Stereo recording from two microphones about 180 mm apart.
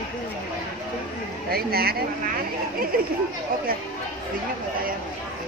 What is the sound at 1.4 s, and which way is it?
Speech, 60° right (ahead or behind).